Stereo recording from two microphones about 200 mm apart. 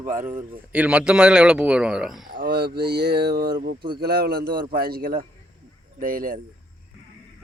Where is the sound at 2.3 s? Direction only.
55° right (ahead or behind).